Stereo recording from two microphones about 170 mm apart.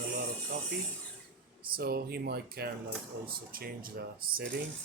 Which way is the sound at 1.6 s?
65° right (ahead or behind).